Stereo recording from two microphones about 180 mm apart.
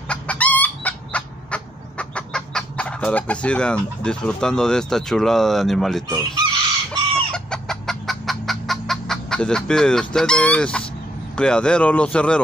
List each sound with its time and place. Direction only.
0.1 s chicken: 5° left (ahead or behind)
6.0 s chicken: 25° right (ahead or behind)
6.9 s chicken: 5° left (ahead or behind)
11.3 s speech: 5° left (ahead or behind)